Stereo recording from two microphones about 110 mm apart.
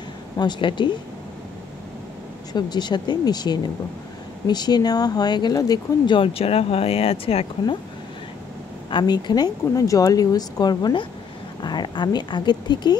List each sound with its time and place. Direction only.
0.4 s a woman's voice: 45° left (ahead or behind)
2.5 s speech: 40° left (ahead or behind)
6.0 s speech: 50° left (ahead or behind)
8.9 s speech: 40° left (ahead or behind)